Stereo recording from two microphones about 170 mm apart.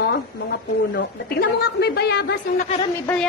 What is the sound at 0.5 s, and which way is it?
A woman's voice, 70° left (ahead or behind).